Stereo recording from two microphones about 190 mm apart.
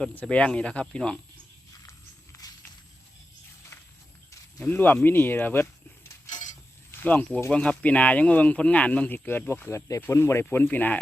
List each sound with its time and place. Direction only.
0.0 s speech: 5° left (ahead or behind)
1.9 s walk: 15° left (ahead or behind)
4.3 s speech: 15° left (ahead or behind)
7.0 s speech: 10° left (ahead or behind)